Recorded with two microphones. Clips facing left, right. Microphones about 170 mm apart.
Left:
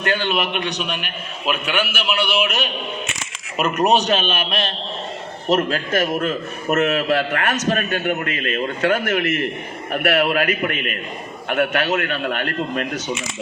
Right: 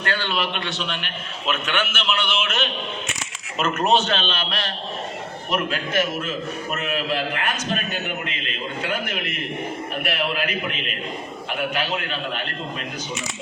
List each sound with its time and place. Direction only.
0.0 s a man's voice: 20° left (ahead or behind)
5.5 s a man's voice: 40° left (ahead or behind); by 10.4 s 60° left (ahead or behind)
11.4 s a man's voice: 55° left (ahead or behind)